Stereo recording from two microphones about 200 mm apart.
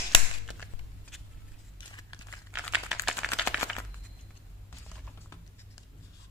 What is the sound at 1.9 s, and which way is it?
Crumpling, 20° left (ahead or behind).